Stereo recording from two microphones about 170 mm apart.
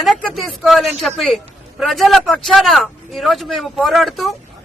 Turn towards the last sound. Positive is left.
turn(degrees=0)  # may be behind; listen again after turning